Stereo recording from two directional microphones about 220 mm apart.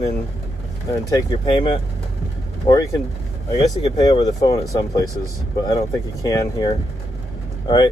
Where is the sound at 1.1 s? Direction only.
20° left (ahead or behind).